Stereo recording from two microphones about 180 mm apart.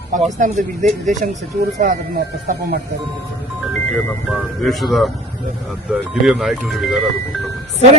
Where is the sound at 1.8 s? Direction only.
50° right (ahead or behind).